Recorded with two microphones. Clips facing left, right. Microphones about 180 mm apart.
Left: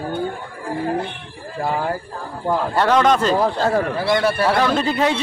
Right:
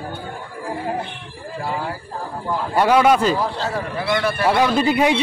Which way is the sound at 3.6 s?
45° left (ahead or behind).